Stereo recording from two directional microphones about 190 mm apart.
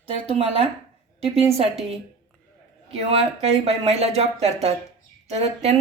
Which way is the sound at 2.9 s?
30° right (ahead or behind).